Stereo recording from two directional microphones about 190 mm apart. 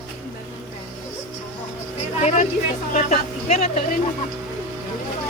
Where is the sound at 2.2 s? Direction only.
35° left (ahead or behind).